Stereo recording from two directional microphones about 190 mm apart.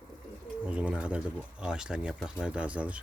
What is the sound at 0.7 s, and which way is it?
Speech, 5° right (ahead or behind).